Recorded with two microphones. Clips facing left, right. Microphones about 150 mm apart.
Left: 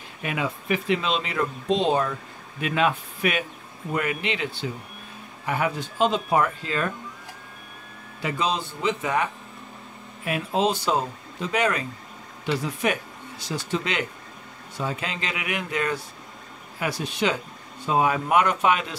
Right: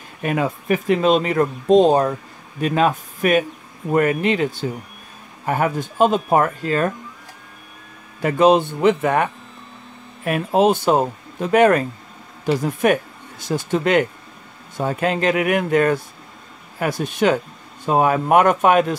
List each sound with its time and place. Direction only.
0.2 s speech: 45° right (ahead or behind)
8.2 s speech: 55° right (ahead or behind)